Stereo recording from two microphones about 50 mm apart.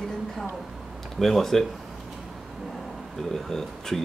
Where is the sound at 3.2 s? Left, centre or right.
Centre.